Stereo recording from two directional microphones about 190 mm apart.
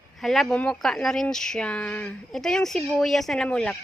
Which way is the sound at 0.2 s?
Centre (ahead or behind).